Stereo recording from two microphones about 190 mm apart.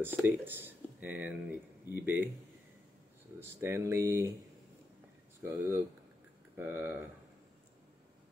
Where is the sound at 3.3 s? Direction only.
15° right (ahead or behind).